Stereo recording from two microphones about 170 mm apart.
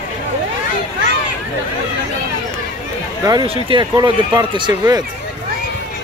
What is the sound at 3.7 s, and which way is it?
Speech, 25° right (ahead or behind).